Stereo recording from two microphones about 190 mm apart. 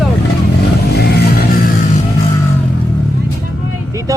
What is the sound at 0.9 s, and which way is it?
Music, 55° left (ahead or behind).